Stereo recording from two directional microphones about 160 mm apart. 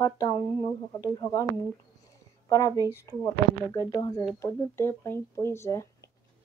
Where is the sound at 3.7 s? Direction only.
25° left (ahead or behind).